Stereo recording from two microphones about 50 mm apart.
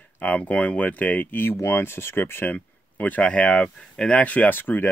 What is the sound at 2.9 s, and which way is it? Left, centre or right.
Speech, left.